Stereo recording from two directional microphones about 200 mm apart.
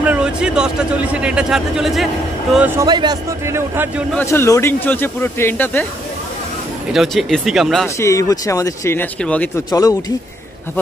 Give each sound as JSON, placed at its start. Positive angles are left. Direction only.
{"t": 0.0, "sound": "a man's voice", "side_deg": -5}
{"t": 2.8, "sound": "a man's voice", "side_deg": -20}
{"t": 4.1, "sound": "speech", "side_deg": 10}
{"t": 6.9, "sound": "a man's voice", "side_deg": 0}
{"t": 8.0, "sound": "speech", "side_deg": 15}
{"t": 9.7, "sound": "speech", "side_deg": 20}